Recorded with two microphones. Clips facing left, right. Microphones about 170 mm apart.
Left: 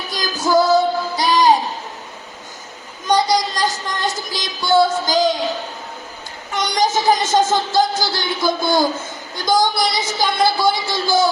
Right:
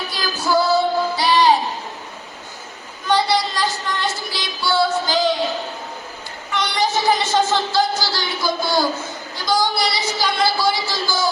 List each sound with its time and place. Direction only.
0.1 s music: 45° left (ahead or behind)
3.1 s a sound: 45° left (ahead or behind)
6.5 s a man's voice: 45° left (ahead or behind)